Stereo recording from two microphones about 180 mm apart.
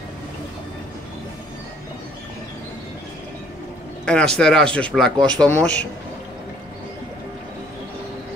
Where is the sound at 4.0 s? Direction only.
5° left (ahead or behind).